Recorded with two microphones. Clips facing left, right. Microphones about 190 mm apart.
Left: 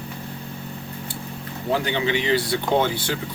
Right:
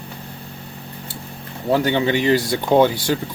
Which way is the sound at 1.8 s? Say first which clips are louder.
Right 5 dB; 50° right (ahead or behind).